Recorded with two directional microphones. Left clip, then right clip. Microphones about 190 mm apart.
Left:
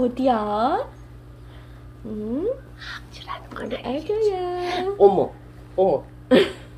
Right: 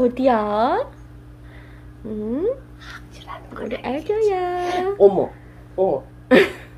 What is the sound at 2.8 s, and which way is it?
Whispering, 30° right (ahead or behind).